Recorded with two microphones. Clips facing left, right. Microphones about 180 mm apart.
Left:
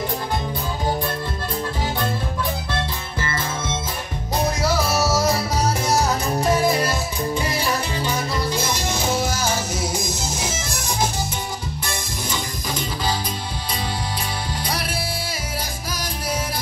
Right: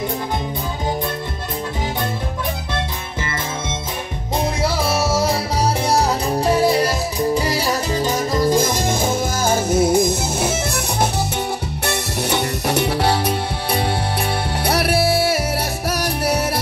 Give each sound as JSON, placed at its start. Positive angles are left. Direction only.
{"t": 4.6, "sound": "music", "side_deg": -30}
{"t": 14.6, "sound": "music", "side_deg": -65}